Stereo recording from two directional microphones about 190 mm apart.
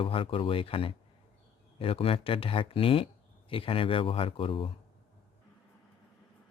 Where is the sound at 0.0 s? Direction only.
30° left (ahead or behind).